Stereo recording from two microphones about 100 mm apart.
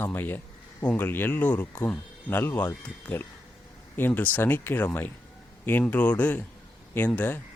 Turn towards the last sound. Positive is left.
turn(degrees=15)  # may be behind; listen again after turning